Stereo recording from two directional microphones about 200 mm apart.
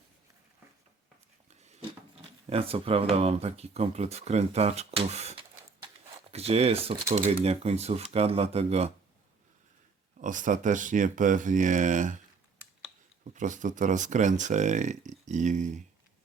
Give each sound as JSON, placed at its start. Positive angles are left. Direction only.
{"t": 2.5, "sound": "speech", "side_deg": -30}
{"t": 10.2, "sound": "speech", "side_deg": -40}
{"t": 13.3, "sound": "speech", "side_deg": -40}